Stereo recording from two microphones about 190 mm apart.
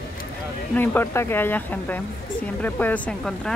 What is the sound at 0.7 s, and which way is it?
Speech, 10° left (ahead or behind).